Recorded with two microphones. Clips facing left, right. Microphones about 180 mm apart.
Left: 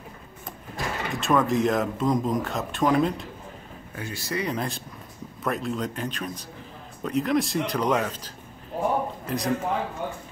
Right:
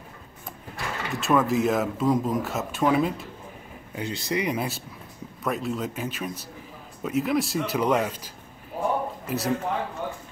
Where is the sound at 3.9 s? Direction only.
20° right (ahead or behind).